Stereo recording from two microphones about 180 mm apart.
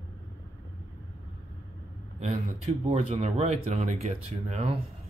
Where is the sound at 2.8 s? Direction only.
35° right (ahead or behind).